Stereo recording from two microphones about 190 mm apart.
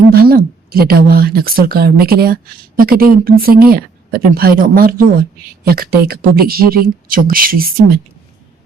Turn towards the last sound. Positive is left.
turn(degrees=-50)  # may be behind; listen again after turning